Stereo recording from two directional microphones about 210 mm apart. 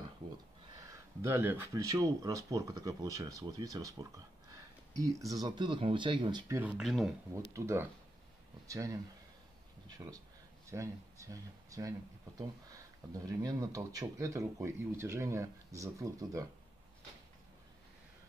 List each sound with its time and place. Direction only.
1.2 s speech: 10° right (ahead or behind)
5.2 s speech: 15° right (ahead or behind); by 7.1 s centre (ahead or behind)
7.5 s speech: 15° right (ahead or behind)
10.7 s speech: 15° right (ahead or behind)